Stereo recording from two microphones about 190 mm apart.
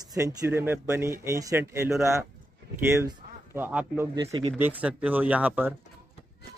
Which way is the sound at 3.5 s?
10° right (ahead or behind).